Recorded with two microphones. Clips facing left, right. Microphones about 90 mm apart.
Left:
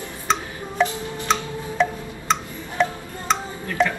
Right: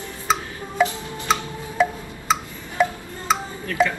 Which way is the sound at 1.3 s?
5° right (ahead or behind).